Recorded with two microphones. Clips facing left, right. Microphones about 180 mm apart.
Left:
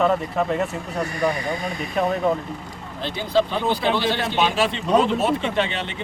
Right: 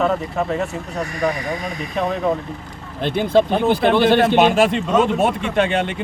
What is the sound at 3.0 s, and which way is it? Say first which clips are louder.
Speech: right 5 dB; 60° right (ahead or behind).